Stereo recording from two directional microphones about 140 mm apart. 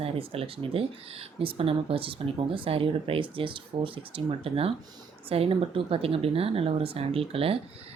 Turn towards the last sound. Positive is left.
turn(degrees=-45)  # may be behind; listen again after turning